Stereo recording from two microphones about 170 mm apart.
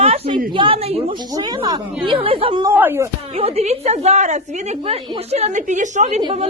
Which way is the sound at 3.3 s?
35° right (ahead or behind).